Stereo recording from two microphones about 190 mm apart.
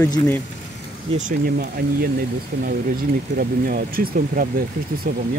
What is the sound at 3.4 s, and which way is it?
Speech, 50° right (ahead or behind).